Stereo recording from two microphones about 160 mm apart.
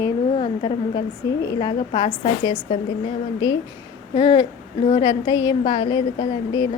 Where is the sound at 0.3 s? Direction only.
35° left (ahead or behind).